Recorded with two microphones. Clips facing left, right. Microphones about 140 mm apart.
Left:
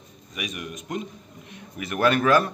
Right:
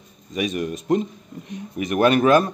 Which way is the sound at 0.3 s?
30° right (ahead or behind).